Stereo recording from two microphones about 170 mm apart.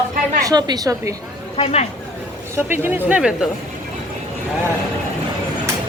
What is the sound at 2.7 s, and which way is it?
Speech, 10° right (ahead or behind).